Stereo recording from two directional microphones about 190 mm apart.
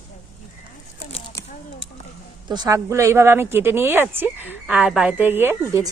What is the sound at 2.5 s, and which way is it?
A woman's voice, 20° right (ahead or behind).